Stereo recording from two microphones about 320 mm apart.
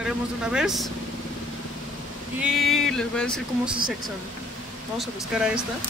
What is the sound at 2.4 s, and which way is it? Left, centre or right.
Speech, centre.